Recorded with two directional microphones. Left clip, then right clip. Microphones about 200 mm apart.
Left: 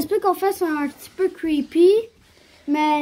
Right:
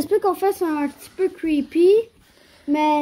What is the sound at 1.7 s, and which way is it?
Speech, 20° left (ahead or behind).